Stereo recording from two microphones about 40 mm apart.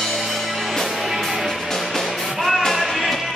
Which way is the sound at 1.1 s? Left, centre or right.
Centre.